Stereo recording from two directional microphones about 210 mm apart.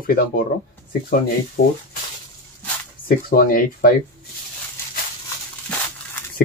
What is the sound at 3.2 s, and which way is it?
Speech, 45° left (ahead or behind).